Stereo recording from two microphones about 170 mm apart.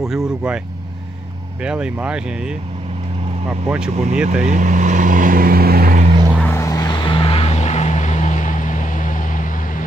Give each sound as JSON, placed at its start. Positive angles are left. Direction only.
{"t": 0.0, "sound": "speech", "side_deg": -5}
{"t": 1.6, "sound": "speech", "side_deg": -5}
{"t": 4.5, "sound": "speech", "side_deg": -50}
{"t": 6.4, "sound": "vehicle", "side_deg": 15}